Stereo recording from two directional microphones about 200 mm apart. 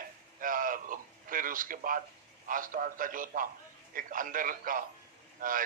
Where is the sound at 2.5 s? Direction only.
45° right (ahead or behind).